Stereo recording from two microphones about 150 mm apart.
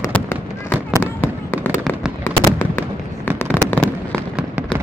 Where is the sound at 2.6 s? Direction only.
15° left (ahead or behind).